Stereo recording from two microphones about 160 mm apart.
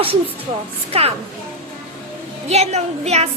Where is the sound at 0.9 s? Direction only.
40° right (ahead or behind).